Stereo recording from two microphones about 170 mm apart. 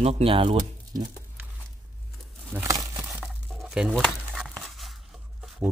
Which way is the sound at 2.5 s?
15° right (ahead or behind).